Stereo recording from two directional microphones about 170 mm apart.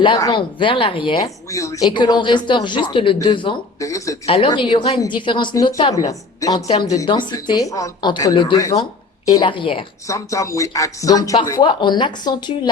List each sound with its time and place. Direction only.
0.0 s a woman's voice: 25° left (ahead or behind)
3.8 s a woman's voice: 20° left (ahead or behind)
4.3 s a woman's voice: 30° left (ahead or behind)
10.1 s a woman's voice: 20° left (ahead or behind)